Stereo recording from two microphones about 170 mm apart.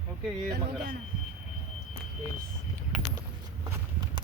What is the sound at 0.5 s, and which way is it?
Speech, 65° right (ahead or behind).